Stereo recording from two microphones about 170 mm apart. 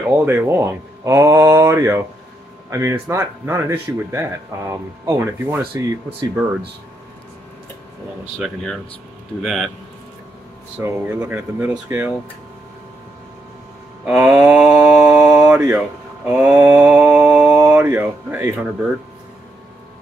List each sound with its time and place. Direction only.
0.0 s speech: 15° right (ahead or behind)
9.4 s speech: centre (ahead or behind)
10.8 s speech: 10° right (ahead or behind)
14.0 s speech: 5° right (ahead or behind)
14.4 s mantra: 5° right (ahead or behind)